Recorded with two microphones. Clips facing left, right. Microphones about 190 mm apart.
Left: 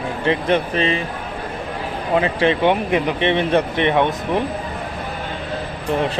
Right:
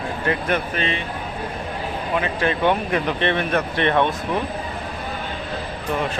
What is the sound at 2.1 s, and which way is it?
Speech, 30° left (ahead or behind).